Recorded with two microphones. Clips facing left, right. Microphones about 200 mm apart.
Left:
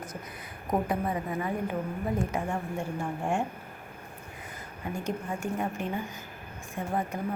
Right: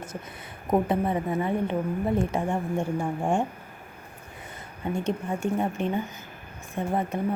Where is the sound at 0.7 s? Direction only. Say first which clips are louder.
Right 5 dB; 25° right (ahead or behind).